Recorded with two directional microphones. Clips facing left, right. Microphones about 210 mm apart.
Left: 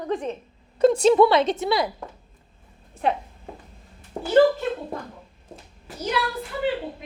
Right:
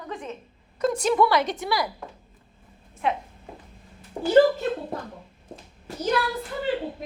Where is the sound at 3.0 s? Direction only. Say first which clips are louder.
Left 2 dB; 35° left (ahead or behind).